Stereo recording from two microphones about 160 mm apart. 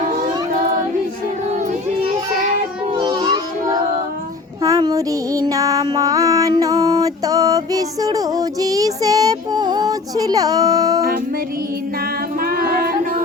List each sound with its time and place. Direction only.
3.2 s child singing: 30° right (ahead or behind)
12.4 s female singing: 65° right (ahead or behind)